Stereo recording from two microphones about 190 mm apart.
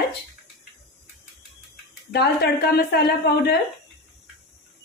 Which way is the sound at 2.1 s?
60° left (ahead or behind).